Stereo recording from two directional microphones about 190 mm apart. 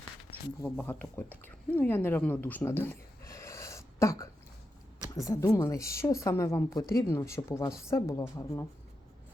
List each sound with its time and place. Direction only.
0.6 s speech: 10° left (ahead or behind)